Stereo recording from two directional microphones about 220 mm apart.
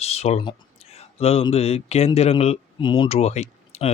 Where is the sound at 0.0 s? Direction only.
30° left (ahead or behind).